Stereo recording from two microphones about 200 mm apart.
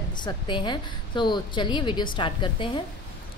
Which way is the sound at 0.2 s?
25° left (ahead or behind).